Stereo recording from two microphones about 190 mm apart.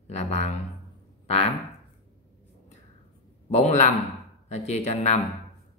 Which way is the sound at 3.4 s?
35° left (ahead or behind).